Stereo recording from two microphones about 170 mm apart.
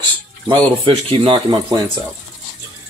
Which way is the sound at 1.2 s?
30° right (ahead or behind).